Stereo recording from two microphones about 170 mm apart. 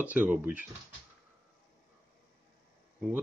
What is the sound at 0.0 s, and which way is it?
Speech, 10° right (ahead or behind).